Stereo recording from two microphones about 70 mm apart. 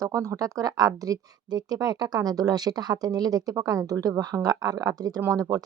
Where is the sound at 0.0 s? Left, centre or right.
Right.